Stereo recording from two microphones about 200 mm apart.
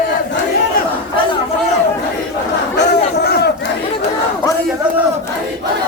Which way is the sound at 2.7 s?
55° left (ahead or behind).